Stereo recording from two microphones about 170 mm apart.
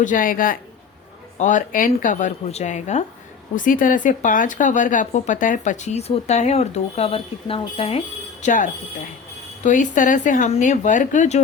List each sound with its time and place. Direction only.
0.0 s speech: 50° left (ahead or behind)